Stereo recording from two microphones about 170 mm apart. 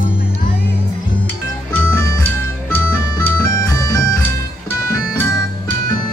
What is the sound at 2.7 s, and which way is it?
Music, 15° left (ahead or behind).